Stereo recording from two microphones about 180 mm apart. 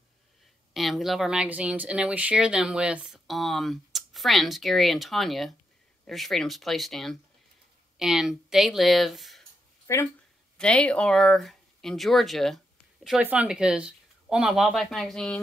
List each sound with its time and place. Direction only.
0.7 s speech: centre (ahead or behind)
9.8 s speech: 15° left (ahead or behind)